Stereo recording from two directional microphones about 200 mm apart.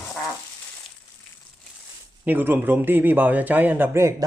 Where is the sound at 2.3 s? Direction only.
10° right (ahead or behind).